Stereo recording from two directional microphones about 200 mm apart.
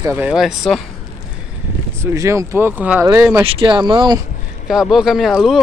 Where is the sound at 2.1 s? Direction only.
15° right (ahead or behind).